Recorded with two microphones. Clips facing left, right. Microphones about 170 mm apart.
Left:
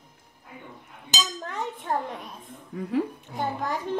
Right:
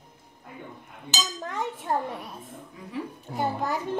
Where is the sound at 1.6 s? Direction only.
5° right (ahead or behind).